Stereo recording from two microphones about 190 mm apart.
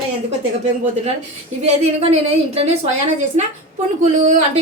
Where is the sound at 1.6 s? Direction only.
30° right (ahead or behind).